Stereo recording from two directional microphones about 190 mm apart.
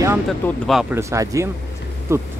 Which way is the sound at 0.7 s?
Centre (ahead or behind).